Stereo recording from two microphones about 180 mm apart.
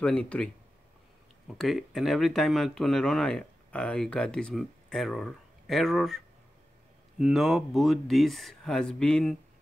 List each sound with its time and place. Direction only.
0.0 s speech: 5° left (ahead or behind)
1.6 s speech: centre (ahead or behind)